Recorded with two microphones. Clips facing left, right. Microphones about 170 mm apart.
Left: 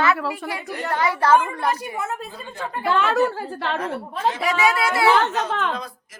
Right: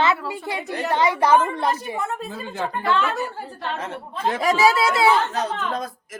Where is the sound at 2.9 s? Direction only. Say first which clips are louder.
Left 4 dB; 80° left.